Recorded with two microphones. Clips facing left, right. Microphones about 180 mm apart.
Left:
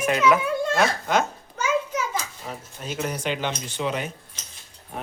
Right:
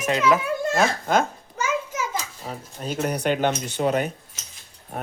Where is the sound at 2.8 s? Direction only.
40° right (ahead or behind).